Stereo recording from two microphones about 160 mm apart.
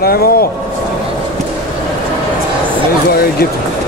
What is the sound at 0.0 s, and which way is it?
Speech, 70° left (ahead or behind).